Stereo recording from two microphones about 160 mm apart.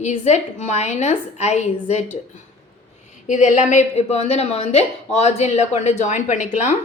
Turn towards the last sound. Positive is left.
turn(degrees=50)  # may be behind; listen again after turning